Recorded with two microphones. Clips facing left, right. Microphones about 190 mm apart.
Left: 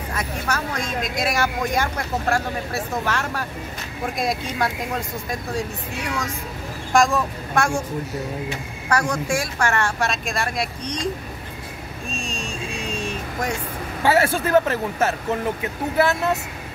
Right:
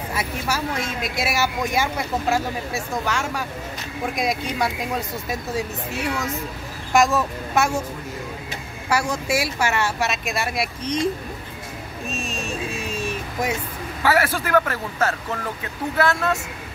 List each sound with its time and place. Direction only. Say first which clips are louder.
0.1 s speech: even; 10° right (ahead or behind)
6.9 s speech: even; 5° right (ahead or behind)
8.8 s speech: left 1 dB; 5° right (ahead or behind)
12.1 s a sound: right 2 dB; 5° right (ahead or behind)
14.0 s speech: left 2 dB; 25° left (ahead or behind)